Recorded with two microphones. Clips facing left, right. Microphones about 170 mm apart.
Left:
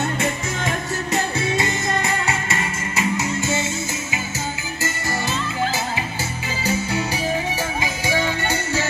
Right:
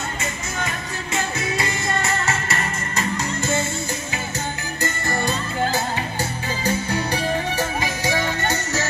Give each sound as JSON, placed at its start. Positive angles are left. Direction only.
{"t": 1.1, "sound": "music", "side_deg": 25}
{"t": 2.0, "sound": "music", "side_deg": 10}
{"t": 6.6, "sound": "music", "side_deg": 10}